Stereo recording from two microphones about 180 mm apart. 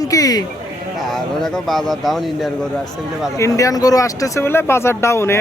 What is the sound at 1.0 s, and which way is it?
Speech, centre (ahead or behind).